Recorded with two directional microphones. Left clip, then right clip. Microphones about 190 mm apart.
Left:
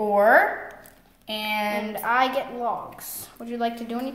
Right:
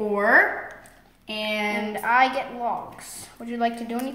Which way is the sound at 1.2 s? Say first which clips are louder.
Even; 45° left (ahead or behind).